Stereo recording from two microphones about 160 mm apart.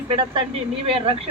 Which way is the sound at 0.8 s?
35° right (ahead or behind).